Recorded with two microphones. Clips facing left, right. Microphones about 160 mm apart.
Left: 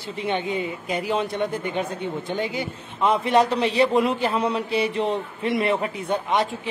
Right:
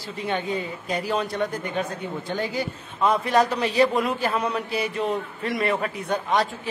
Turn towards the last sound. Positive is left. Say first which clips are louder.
# left 1 dB
turn(degrees=25)  # may be behind; listen again after turning